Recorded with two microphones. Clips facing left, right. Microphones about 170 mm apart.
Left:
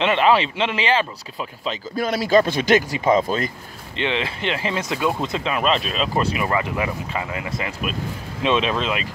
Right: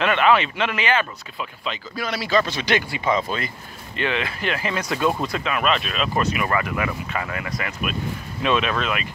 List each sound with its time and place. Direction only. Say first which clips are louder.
0.0 s speech: left 1 dB; 30° left (ahead or behind)
3.9 s speech: left 1 dB; 25° left (ahead or behind)